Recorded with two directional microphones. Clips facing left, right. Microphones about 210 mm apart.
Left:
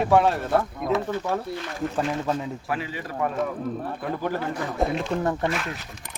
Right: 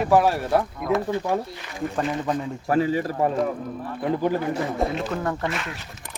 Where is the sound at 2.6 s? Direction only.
40° right (ahead or behind).